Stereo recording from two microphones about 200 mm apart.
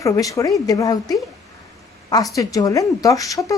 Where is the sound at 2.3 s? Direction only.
15° left (ahead or behind).